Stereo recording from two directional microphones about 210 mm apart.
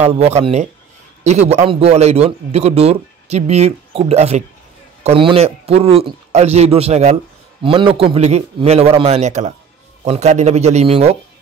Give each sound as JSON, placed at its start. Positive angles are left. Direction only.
{"t": 0.0, "sound": "a man's voice", "side_deg": -30}